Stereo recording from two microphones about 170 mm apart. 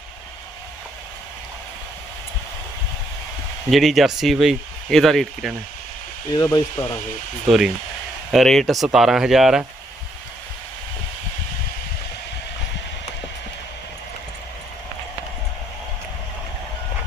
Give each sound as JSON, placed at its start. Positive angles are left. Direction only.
{"t": 3.7, "sound": "speech", "side_deg": 0}
{"t": 6.3, "sound": "speech", "side_deg": 20}
{"t": 7.4, "sound": "speech", "side_deg": 0}